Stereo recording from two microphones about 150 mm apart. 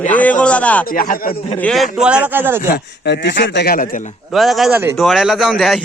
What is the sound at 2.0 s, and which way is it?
Speech, 5° right (ahead or behind).